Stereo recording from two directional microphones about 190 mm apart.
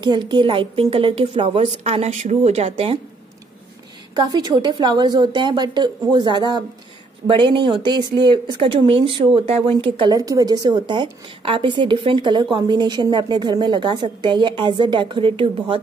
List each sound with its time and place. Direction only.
0.0 s speech: 25° right (ahead or behind)
4.1 s speech: 20° right (ahead or behind)